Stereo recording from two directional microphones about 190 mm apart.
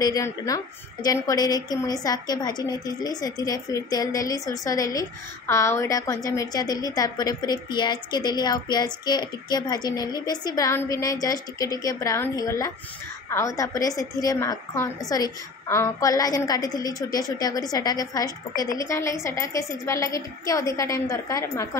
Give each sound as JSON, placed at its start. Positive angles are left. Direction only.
{"t": 0.0, "sound": "a woman's voice", "side_deg": 20}